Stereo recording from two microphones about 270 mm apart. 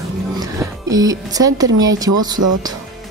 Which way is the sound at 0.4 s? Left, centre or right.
Centre.